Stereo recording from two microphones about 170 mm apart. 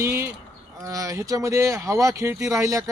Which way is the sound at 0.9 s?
20° right (ahead or behind).